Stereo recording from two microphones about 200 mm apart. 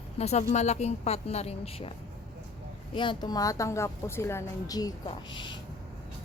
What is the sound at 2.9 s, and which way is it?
A woman's voice, 25° left (ahead or behind).